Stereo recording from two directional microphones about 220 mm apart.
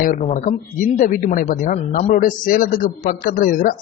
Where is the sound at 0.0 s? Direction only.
35° left (ahead or behind).